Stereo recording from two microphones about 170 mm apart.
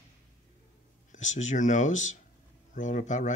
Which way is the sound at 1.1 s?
45° left (ahead or behind).